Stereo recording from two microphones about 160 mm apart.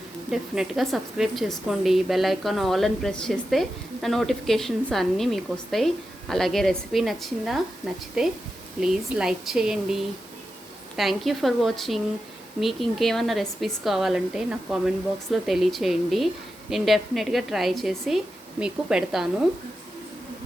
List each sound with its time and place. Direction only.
0.3 s a woman's voice: 5° right (ahead or behind)